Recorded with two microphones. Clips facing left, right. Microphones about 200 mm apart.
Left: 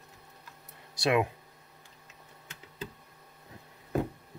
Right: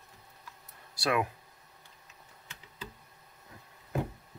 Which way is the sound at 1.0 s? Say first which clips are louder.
Left 3 dB; 20° left (ahead or behind).